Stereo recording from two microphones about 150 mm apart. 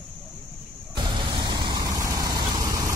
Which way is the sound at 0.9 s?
30° right (ahead or behind).